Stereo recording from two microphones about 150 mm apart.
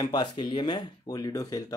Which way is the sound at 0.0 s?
30° left (ahead or behind).